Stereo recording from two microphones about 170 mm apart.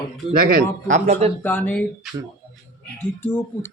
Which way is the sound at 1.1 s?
40° right (ahead or behind).